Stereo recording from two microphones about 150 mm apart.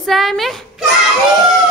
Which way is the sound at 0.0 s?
Centre (ahead or behind).